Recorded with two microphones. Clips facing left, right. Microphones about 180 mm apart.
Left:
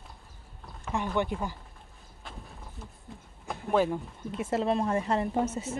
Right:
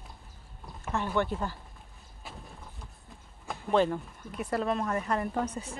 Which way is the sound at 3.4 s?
10° left (ahead or behind).